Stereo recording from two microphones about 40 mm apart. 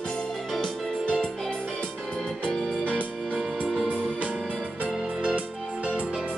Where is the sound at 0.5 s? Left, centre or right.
Centre.